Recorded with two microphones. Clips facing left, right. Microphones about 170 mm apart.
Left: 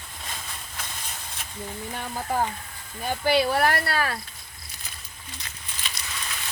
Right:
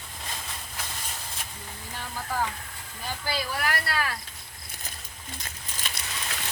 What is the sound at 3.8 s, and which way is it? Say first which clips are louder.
Speech: left 3 dB; 50° left (ahead or behind).